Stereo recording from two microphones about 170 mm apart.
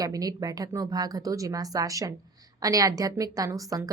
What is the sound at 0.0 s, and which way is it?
A woman's voice, 20° right (ahead or behind).